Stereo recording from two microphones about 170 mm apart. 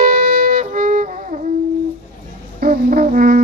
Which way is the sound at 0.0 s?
55° right (ahead or behind).